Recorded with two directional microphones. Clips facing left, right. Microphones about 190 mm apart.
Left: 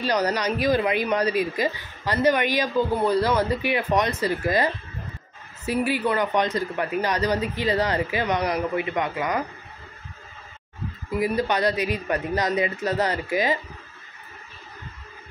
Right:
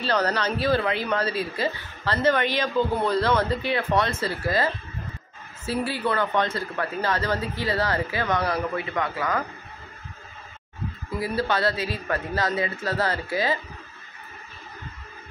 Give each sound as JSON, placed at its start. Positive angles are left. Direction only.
{"t": 0.0, "sound": "a woman's voice", "side_deg": 15}
{"t": 5.7, "sound": "a woman's voice", "side_deg": 15}
{"t": 11.1, "sound": "a woman's voice", "side_deg": 15}